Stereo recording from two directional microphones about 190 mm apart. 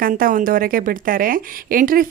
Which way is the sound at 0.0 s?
50° right (ahead or behind).